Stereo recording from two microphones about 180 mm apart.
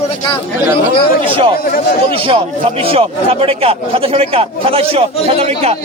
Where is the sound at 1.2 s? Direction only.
30° right (ahead or behind).